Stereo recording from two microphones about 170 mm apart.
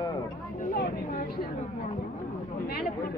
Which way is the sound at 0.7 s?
65° left (ahead or behind).